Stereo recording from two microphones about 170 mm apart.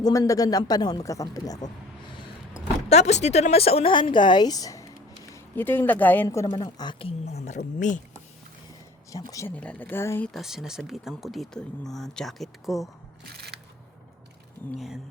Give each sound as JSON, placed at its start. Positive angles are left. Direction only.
{"t": 0.0, "sound": "speech", "side_deg": 20}
{"t": 2.9, "sound": "a woman's voice", "side_deg": 40}
{"t": 7.3, "sound": "speech", "side_deg": 40}
{"t": 9.1, "sound": "speech", "side_deg": 20}
{"t": 9.6, "sound": "speech", "side_deg": 5}
{"t": 13.3, "sound": "a sound", "side_deg": -70}